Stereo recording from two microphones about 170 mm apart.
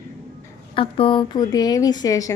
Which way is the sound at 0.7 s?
30° left (ahead or behind).